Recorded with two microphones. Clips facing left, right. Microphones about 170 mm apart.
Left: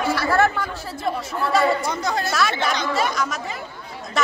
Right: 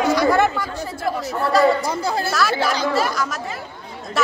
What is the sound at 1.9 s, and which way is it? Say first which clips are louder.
Speech: right 2 dB; 30° right (ahead or behind).